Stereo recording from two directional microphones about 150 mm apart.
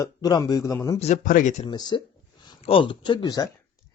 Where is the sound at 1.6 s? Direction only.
30° left (ahead or behind).